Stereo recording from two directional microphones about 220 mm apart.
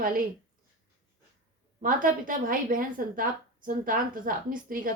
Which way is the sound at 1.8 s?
40° right (ahead or behind).